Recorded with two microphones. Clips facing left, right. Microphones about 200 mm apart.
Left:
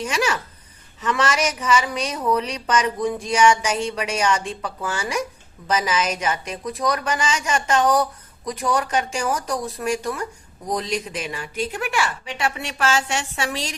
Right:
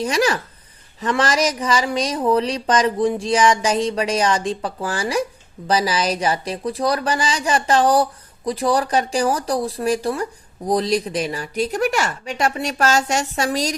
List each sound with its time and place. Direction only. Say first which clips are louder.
0.0 s speech: right 4 dB; 35° right (ahead or behind)